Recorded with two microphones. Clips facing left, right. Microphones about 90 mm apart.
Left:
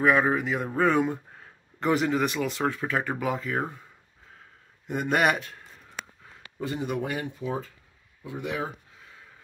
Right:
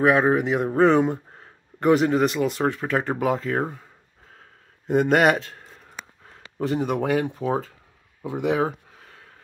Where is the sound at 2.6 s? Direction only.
30° right (ahead or behind).